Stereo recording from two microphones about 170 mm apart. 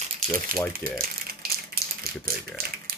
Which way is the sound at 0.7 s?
60° right (ahead or behind).